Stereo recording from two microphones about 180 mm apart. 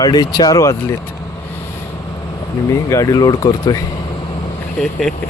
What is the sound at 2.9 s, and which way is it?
Speech, 20° left (ahead or behind).